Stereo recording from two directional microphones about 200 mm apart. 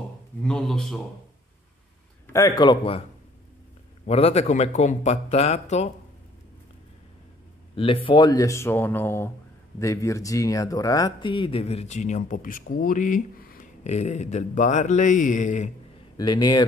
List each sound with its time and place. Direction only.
0.4 s a man's voice: 5° left (ahead or behind)
2.3 s a man's voice: 20° left (ahead or behind)
4.0 s speech: 30° left (ahead or behind)
7.7 s speech: 25° left (ahead or behind)
16.2 s a man's voice: 20° left (ahead or behind)